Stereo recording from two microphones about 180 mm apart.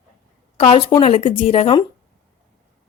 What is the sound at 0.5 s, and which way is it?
A woman's voice, 35° left (ahead or behind).